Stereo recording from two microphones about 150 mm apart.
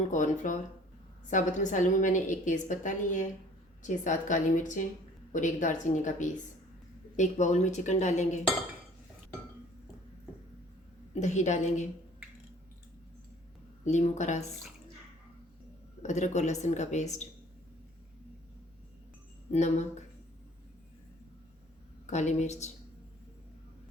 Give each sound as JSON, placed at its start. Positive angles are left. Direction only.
{"t": 0.1, "sound": "a woman's voice", "side_deg": 55}
{"t": 11.1, "sound": "speech", "side_deg": 50}
{"t": 13.8, "sound": "speech", "side_deg": 50}
{"t": 16.0, "sound": "speech", "side_deg": 50}
{"t": 19.5, "sound": "speech", "side_deg": 50}
{"t": 22.0, "sound": "speech", "side_deg": 50}